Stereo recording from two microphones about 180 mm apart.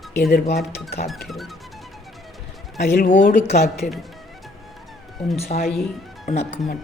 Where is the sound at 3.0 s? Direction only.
45° left (ahead or behind).